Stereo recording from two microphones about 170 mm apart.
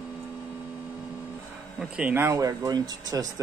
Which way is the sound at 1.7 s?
5° right (ahead or behind).